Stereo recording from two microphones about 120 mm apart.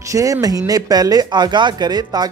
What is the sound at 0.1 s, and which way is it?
Speech, 30° right (ahead or behind).